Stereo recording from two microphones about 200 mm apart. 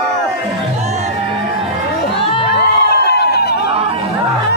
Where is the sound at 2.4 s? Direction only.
55° left (ahead or behind).